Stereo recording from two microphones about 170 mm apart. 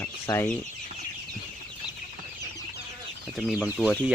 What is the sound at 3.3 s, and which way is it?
Speech, centre (ahead or behind).